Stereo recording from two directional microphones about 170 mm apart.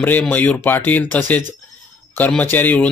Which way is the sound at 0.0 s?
10° left (ahead or behind).